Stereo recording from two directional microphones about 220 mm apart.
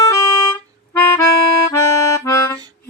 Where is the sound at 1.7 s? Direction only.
15° left (ahead or behind).